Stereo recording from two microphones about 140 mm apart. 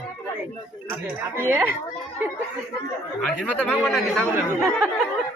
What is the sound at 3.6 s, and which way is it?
Speech, 5° left (ahead or behind).